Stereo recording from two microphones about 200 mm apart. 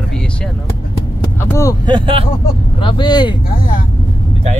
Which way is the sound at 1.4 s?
15° left (ahead or behind).